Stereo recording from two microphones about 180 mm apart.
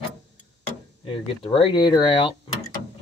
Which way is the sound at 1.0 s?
30° left (ahead or behind).